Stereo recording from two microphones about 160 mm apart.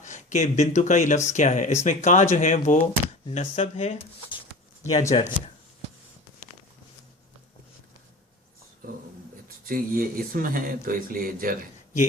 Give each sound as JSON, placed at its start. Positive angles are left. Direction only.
{"t": 0.0, "sound": "speech", "side_deg": 50}
{"t": 9.6, "sound": "speech", "side_deg": -65}